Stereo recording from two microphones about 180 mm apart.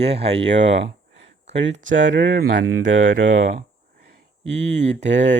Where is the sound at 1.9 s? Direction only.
90° right.